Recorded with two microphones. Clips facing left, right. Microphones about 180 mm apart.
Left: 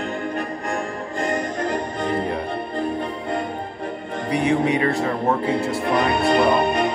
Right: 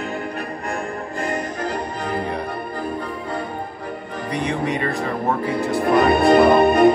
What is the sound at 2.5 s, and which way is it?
Music, 25° left (ahead or behind).